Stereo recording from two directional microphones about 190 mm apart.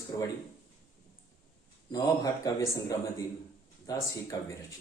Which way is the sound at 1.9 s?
20° left (ahead or behind).